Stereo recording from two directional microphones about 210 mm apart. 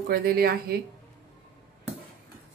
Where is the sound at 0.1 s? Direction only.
45° right (ahead or behind).